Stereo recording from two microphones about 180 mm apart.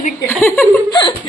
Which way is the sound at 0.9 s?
25° left (ahead or behind).